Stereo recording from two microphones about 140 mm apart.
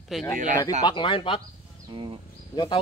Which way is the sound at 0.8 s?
35° left (ahead or behind).